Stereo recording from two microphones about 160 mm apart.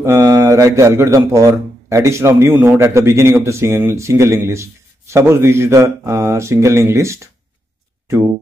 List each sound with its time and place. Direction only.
0.0 s speech: 15° right (ahead or behind)